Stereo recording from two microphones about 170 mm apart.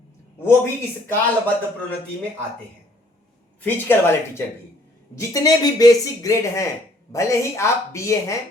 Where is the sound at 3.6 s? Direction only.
10° left (ahead or behind).